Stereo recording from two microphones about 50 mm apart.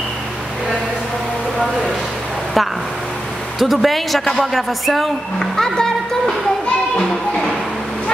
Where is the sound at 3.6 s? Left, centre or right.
Centre.